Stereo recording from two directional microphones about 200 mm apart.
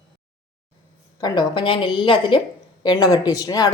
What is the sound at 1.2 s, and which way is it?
Speech, 20° left (ahead or behind).